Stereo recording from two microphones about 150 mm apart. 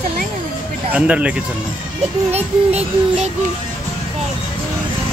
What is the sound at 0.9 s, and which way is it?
Speech, 10° right (ahead or behind).